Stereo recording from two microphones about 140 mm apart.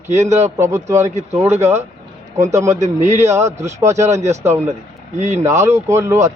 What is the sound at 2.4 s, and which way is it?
Speech, 20° right (ahead or behind).